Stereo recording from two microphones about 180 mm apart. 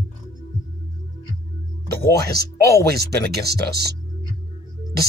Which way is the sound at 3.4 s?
60° right (ahead or behind).